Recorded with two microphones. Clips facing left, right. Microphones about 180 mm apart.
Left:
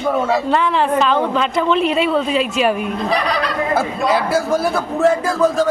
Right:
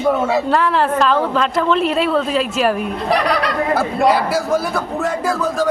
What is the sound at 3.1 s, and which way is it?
Speech, 70° right (ahead or behind).